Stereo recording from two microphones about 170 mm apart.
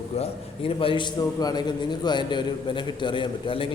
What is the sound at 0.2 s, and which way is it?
A man's voice, 35° left (ahead or behind).